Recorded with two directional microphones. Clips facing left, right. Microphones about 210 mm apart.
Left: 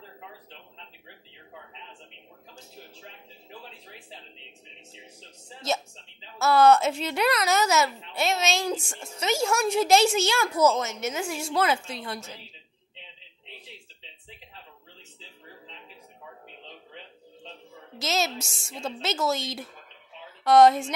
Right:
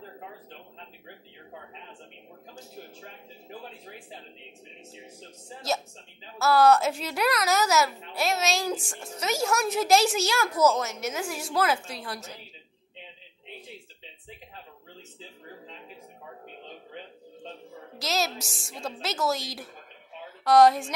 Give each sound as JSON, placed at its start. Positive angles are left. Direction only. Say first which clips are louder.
{"t": 0.5, "sound": "a sound", "louder": "right 3 dB", "side_deg": -45}
{"t": 3.0, "sound": "speech", "louder": "right 3 dB", "side_deg": -50}
{"t": 6.4, "sound": "speech", "louder": "left 1 dB", "side_deg": 0}
{"t": 15.1, "sound": "a sound", "louder": "right 3 dB", "side_deg": -50}
{"t": 16.6, "sound": "music", "louder": "right 3 dB", "side_deg": -45}
{"t": 17.9, "sound": "a woman's voice", "louder": "left 1 dB", "side_deg": 0}